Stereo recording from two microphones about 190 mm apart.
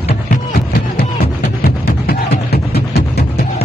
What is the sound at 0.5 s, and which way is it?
Music, 55° left (ahead or behind).